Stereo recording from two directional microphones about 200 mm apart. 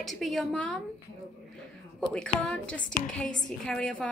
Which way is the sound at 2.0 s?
5° left (ahead or behind).